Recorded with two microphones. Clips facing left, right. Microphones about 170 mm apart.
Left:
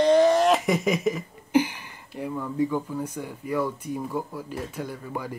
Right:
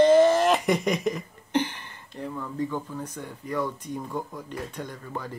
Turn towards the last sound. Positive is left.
turn(degrees=10)  # may be behind; listen again after turning